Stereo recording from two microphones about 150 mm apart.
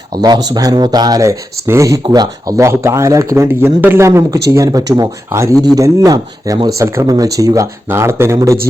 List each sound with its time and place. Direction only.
0.2 s speech: 25° right (ahead or behind)